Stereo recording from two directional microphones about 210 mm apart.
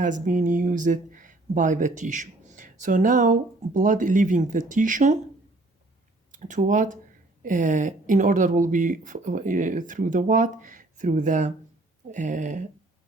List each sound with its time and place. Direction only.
0.0 s speech: 40° right (ahead or behind)
6.3 s speech: 35° right (ahead or behind)